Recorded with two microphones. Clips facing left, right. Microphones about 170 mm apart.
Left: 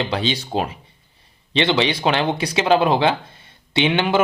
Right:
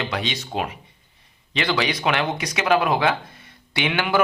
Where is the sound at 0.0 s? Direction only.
30° left (ahead or behind).